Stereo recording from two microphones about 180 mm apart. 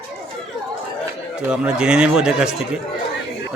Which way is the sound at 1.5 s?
5° right (ahead or behind).